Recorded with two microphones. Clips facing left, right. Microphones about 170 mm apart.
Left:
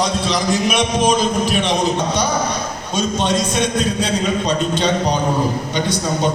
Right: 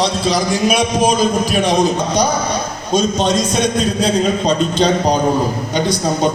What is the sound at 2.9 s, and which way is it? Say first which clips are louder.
A man's voice: right 4 dB; 40° right (ahead or behind).